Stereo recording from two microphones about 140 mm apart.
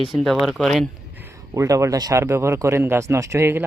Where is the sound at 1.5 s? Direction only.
20° right (ahead or behind).